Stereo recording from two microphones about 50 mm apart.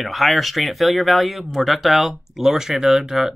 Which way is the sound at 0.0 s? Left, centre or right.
Centre.